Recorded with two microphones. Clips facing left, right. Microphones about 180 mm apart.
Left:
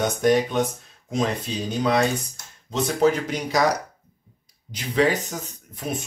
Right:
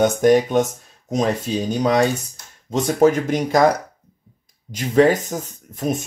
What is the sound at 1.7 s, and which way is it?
Speech, 40° right (ahead or behind).